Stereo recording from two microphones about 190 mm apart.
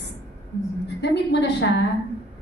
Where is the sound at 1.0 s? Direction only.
65° left (ahead or behind).